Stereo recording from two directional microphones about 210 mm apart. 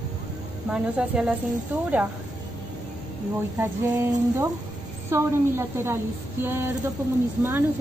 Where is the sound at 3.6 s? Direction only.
15° right (ahead or behind).